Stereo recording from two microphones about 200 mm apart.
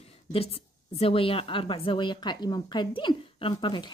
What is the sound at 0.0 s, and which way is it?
A woman's voice, 30° left (ahead or behind).